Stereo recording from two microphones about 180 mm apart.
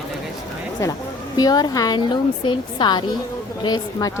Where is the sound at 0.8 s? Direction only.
15° left (ahead or behind).